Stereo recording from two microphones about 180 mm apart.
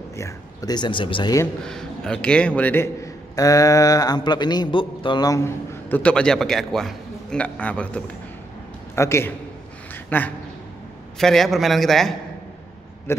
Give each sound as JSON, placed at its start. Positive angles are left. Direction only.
{"t": 0.1, "sound": "a man's voice", "side_deg": 15}
{"t": 1.7, "sound": "a man's voice", "side_deg": 5}